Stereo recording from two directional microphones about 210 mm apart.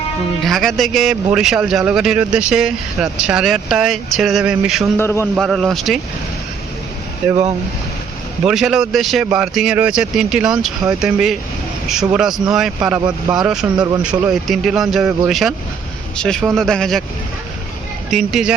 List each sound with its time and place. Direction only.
0.4 s a man's voice: centre (ahead or behind)
4.9 s a man's voice: 10° left (ahead or behind)
5.4 s a man's voice: centre (ahead or behind)
7.3 s speech: 20° right (ahead or behind)
8.4 s a man's voice: 5° right (ahead or behind)
18.1 s a man's voice: centre (ahead or behind)